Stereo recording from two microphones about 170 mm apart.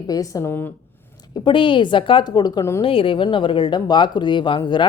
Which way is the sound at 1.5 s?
30° left (ahead or behind).